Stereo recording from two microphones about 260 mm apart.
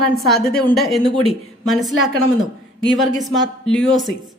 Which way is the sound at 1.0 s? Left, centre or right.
Right.